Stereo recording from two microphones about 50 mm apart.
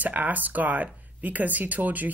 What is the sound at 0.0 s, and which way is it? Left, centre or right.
Speech, right.